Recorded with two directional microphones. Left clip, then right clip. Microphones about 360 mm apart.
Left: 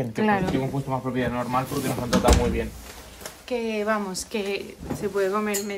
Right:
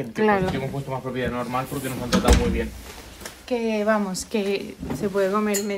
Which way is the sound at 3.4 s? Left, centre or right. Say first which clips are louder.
Right 3 dB; centre.